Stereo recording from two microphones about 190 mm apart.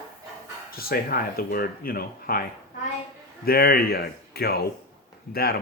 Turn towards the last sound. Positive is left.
turn(degrees=55)  # may be behind; listen again after turning